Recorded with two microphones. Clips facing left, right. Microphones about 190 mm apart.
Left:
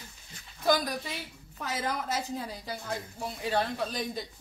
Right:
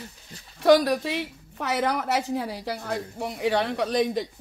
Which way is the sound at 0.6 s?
75° right (ahead or behind).